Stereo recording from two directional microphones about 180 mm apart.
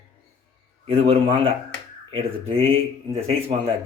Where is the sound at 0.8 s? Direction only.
30° right (ahead or behind).